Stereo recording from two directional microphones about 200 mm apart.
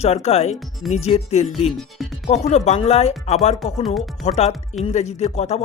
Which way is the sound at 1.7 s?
Centre (ahead or behind).